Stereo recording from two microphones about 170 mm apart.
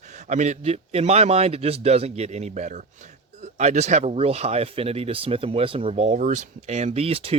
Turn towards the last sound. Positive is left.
turn(degrees=-35)  # may be behind; listen again after turning